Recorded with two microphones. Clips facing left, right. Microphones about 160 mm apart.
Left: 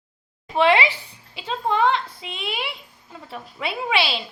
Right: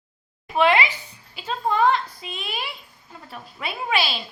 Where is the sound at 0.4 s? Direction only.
30° left (ahead or behind).